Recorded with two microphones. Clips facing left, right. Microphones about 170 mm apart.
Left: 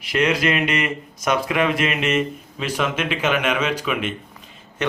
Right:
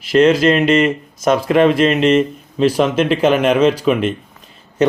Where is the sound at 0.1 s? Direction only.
30° right (ahead or behind).